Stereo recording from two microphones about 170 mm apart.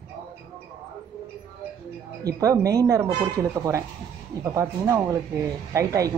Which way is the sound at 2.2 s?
20° right (ahead or behind).